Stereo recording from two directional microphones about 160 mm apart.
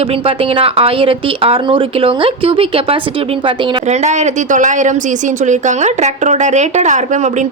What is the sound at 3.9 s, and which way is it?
Speech, 45° right (ahead or behind).